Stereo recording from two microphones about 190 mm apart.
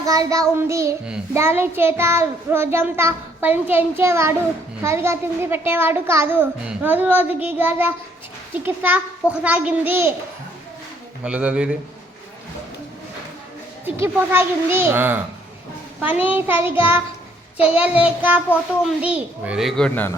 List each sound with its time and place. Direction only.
0.0 s child singing: 20° right (ahead or behind)
11.2 s a child's voice: 5° right (ahead or behind)
13.8 s child singing: 10° right (ahead or behind)
17.7 s child singing: 5° right (ahead or behind)
19.0 s a child's voice: 5° right (ahead or behind)